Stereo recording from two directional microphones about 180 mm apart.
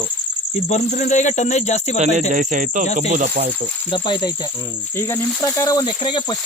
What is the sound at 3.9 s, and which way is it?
Speech, 25° left (ahead or behind).